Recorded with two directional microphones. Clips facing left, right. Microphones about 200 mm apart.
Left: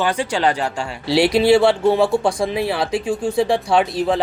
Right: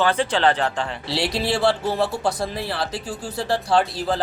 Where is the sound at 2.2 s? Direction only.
Centre (ahead or behind).